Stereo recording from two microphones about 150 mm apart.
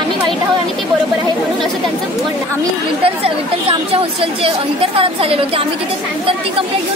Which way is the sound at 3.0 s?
40° right (ahead or behind).